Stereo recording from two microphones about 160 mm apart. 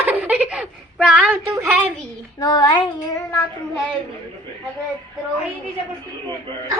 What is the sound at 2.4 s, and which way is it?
Child singing, 25° left (ahead or behind).